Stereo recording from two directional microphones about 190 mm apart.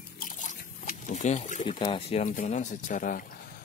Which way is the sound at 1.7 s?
30° left (ahead or behind).